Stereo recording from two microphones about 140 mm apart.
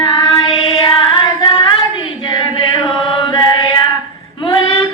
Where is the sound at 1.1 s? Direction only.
35° left (ahead or behind).